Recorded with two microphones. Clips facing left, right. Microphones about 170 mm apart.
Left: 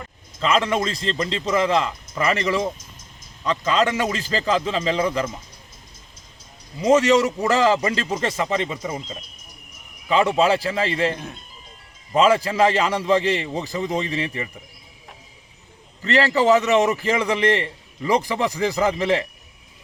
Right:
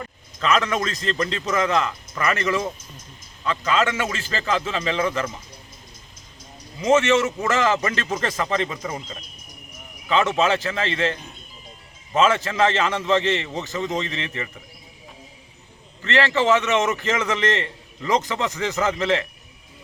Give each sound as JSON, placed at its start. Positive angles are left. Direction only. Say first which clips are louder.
{"t": 0.3, "sound": "a man's voice", "louder": "left 1 dB", "side_deg": 30}
{"t": 6.7, "sound": "a man's voice", "louder": "left 2 dB", "side_deg": 35}
{"t": 10.1, "sound": "a man's voice", "louder": "left 2 dB", "side_deg": 30}
{"t": 16.0, "sound": "a man's voice", "louder": "left 2 dB", "side_deg": 35}
{"t": 17.5, "sound": "a man's voice", "louder": "left 3 dB", "side_deg": 15}
{"t": 18.1, "sound": "a man's voice", "louder": "left 2 dB", "side_deg": 35}